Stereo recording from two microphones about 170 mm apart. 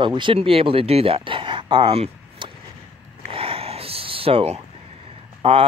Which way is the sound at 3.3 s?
35° right (ahead or behind).